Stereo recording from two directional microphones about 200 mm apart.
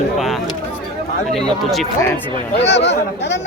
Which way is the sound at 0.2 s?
Centre (ahead or behind).